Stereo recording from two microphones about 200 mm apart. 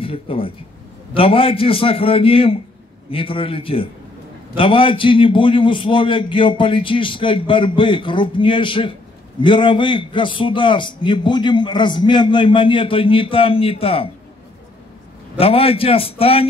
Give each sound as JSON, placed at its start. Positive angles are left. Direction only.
{"t": 0.0, "sound": "a man's voice", "side_deg": 25}
{"t": 15.3, "sound": "a man's voice", "side_deg": 30}